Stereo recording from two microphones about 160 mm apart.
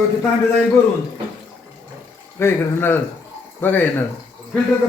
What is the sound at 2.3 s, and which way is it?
A man's voice, 15° left (ahead or behind).